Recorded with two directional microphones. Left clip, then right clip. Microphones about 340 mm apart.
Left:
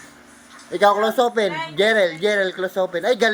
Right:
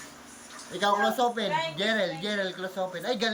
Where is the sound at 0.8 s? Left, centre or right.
Centre.